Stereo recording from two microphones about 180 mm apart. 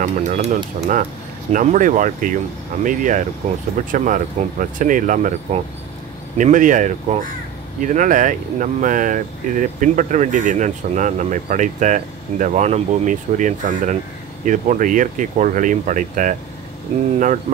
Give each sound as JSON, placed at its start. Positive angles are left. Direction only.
{"t": 0.0, "sound": "speech", "side_deg": -45}